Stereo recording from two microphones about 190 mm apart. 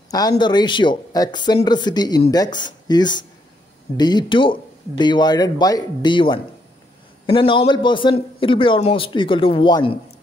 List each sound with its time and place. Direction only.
0.1 s speech: 20° left (ahead or behind)